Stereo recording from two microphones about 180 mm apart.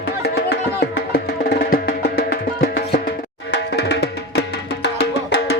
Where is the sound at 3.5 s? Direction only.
65° left (ahead or behind).